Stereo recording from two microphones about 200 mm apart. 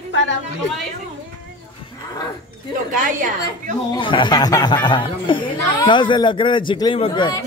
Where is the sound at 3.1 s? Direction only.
40° right (ahead or behind).